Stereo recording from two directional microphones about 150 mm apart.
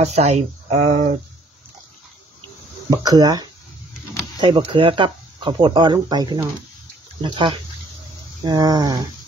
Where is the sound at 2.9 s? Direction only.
25° right (ahead or behind).